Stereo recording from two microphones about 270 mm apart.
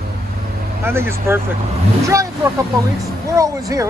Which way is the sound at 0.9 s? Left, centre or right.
Centre.